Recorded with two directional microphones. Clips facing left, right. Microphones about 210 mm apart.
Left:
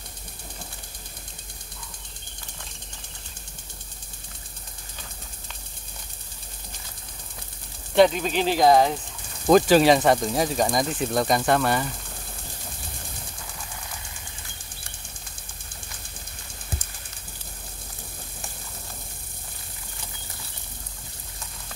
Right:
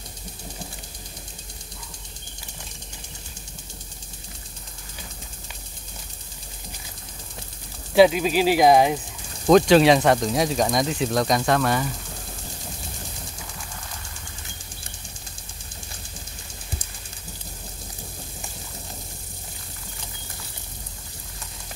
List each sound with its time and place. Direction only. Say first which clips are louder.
7.9 s speech: right 2 dB; 5° right (ahead or behind)
9.5 s speech: right 2 dB; centre (ahead or behind)